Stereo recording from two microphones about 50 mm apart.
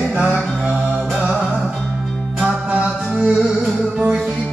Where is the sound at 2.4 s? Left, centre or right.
Right.